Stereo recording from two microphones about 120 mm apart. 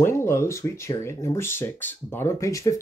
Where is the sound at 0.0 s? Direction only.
20° left (ahead or behind).